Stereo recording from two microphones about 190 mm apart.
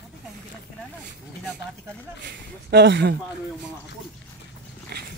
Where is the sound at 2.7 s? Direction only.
65° right (ahead or behind).